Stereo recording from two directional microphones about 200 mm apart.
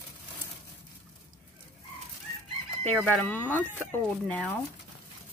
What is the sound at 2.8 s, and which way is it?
Speech, 10° left (ahead or behind).